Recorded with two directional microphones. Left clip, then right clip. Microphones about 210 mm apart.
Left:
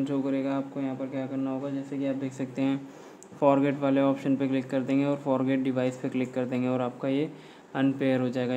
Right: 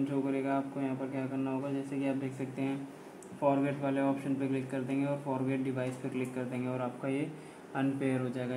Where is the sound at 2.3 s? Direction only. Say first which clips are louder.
Left 7 dB; 40° left (ahead or behind).